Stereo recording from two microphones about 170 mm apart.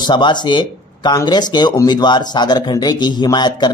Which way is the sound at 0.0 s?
25° left (ahead or behind).